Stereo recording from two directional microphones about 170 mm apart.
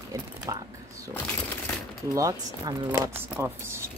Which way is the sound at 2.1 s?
20° right (ahead or behind).